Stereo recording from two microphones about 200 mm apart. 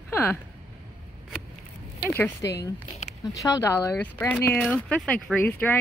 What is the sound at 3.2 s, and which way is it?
Speech, 15° left (ahead or behind).